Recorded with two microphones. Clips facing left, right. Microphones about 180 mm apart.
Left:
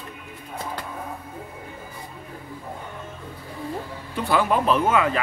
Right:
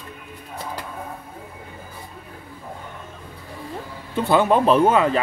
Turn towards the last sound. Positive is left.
turn(degrees=-30)  # may be behind; listen again after turning